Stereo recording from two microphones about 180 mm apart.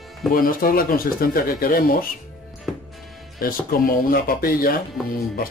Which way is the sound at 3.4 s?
55° left (ahead or behind).